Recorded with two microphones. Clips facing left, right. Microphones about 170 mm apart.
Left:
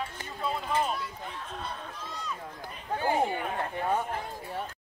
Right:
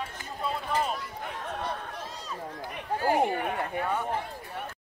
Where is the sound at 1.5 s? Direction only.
70° right (ahead or behind).